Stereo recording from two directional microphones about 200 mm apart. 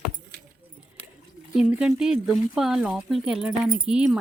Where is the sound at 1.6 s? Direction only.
5° right (ahead or behind).